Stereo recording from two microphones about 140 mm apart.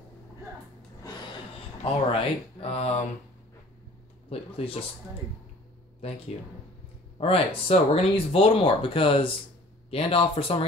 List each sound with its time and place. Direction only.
1.8 s speech: 50° left (ahead or behind)
4.3 s speech: 45° left (ahead or behind)
7.2 s speech: 40° left (ahead or behind)